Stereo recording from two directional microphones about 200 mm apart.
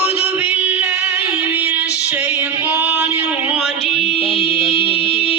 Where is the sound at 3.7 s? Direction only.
30° left (ahead or behind).